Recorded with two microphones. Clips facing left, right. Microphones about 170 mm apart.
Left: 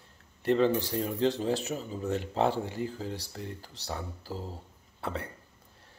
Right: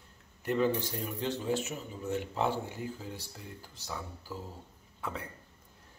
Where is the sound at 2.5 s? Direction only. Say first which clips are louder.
Left 4 dB; 90° left.